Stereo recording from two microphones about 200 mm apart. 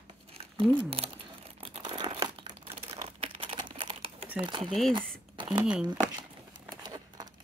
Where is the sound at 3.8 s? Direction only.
25° right (ahead or behind).